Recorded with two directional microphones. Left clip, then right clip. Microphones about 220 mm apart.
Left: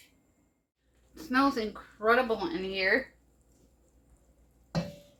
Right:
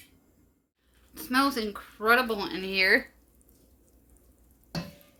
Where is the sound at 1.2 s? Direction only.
30° right (ahead or behind); by 3.0 s 55° right (ahead or behind).